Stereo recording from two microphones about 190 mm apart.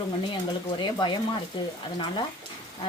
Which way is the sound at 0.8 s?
25° left (ahead or behind).